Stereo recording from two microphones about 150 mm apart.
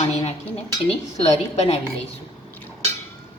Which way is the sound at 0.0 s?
45° left (ahead or behind).